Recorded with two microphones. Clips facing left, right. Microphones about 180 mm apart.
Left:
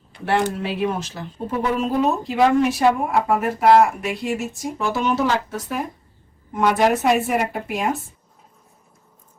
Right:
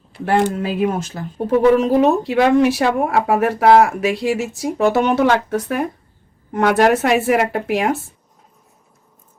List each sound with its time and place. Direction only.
0.3 s speech: 50° right (ahead or behind)
1.8 s speech: 75° right (ahead or behind)